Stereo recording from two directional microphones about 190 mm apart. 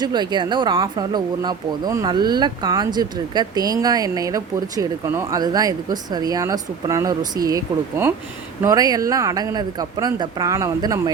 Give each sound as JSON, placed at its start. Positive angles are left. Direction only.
{"t": 0.0, "sound": "speech", "side_deg": -20}